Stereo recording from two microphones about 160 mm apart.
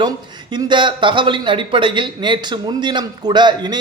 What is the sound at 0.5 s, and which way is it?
Speech, 30° right (ahead or behind).